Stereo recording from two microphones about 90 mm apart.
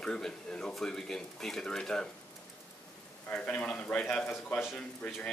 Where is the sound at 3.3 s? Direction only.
15° left (ahead or behind).